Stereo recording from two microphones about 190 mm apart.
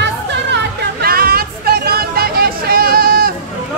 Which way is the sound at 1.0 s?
50° right (ahead or behind).